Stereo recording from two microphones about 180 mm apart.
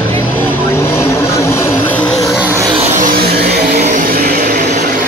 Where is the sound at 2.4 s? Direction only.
10° right (ahead or behind).